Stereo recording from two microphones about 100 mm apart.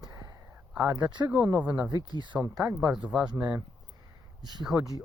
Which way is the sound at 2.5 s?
35° right (ahead or behind).